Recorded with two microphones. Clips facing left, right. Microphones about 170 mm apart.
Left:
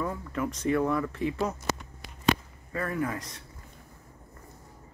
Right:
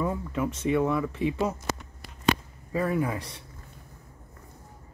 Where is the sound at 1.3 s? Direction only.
10° right (ahead or behind).